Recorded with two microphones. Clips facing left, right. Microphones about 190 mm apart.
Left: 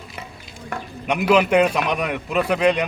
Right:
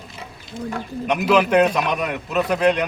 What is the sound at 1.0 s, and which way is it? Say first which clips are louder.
A man's voice: even; 10° left (ahead or behind).